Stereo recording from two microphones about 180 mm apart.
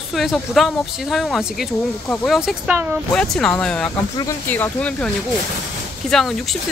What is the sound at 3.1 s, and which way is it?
Speech, 5° left (ahead or behind).